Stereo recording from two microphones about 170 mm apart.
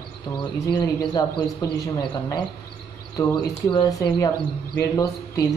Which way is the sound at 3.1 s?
25° left (ahead or behind).